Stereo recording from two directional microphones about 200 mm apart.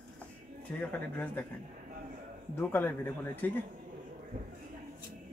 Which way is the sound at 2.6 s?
10° left (ahead or behind).